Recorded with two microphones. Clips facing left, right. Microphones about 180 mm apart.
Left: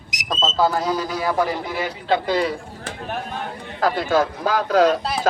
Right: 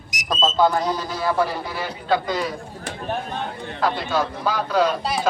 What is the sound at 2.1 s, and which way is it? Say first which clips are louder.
Speech: left 2 dB; 30° left (ahead or behind).